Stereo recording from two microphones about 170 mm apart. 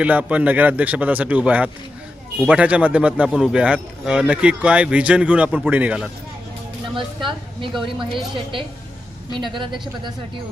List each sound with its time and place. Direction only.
0.0 s speech: 10° right (ahead or behind)
6.9 s a woman's voice: 30° right (ahead or behind)